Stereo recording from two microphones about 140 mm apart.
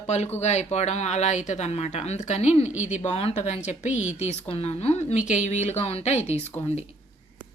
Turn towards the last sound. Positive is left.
turn(degrees=50)  # may be behind; listen again after turning